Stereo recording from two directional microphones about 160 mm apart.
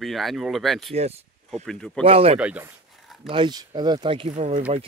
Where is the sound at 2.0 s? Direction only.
35° right (ahead or behind).